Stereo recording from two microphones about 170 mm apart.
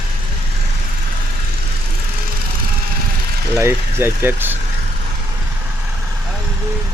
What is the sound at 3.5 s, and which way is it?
Speech, 15° right (ahead or behind).